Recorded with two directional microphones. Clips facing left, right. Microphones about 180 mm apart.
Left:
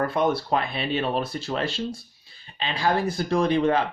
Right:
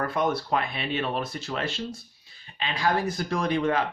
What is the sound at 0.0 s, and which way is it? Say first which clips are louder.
Speech: left 3 dB; 30° left (ahead or behind).